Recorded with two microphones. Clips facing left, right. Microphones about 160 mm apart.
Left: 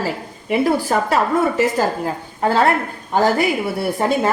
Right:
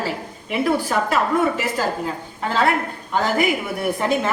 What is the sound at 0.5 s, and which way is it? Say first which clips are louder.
A woman's voice: left 3 dB; 40° left (ahead or behind).